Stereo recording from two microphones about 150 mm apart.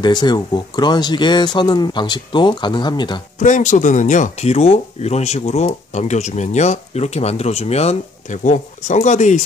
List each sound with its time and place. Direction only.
0.0 s speech: 30° left (ahead or behind)
3.3 s speech: 55° left (ahead or behind)